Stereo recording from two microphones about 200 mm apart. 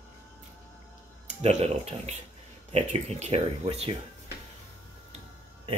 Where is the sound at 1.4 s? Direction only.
30° right (ahead or behind).